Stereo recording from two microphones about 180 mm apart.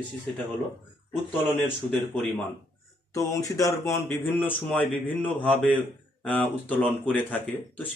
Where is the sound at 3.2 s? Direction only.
20° left (ahead or behind).